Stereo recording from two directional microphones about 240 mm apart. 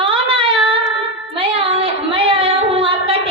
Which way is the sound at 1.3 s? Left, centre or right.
Right.